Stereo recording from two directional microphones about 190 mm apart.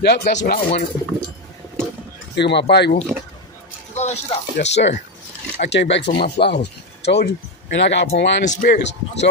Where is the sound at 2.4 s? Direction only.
65° left (ahead or behind).